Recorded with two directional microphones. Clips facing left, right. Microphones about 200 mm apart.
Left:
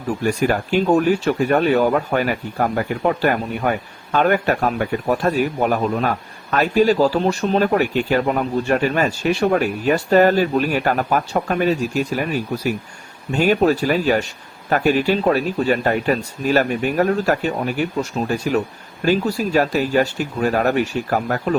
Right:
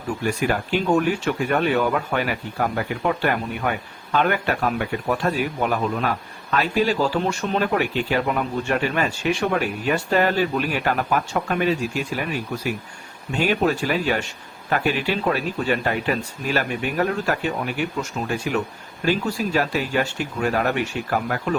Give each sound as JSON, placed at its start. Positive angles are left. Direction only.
{"t": 0.2, "sound": "speech", "side_deg": 45}